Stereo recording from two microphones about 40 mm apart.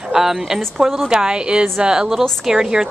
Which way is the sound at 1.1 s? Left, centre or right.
Right.